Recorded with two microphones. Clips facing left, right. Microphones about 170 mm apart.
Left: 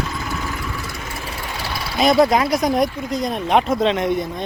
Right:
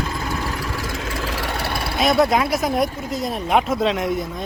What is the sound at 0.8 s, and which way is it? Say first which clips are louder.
Vehicle: right 4 dB; 90° right.